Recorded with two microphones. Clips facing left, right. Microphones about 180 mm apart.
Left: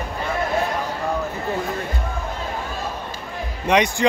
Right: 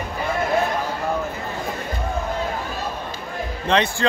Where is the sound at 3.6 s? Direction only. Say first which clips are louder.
Left 2 dB; 15° left (ahead or behind).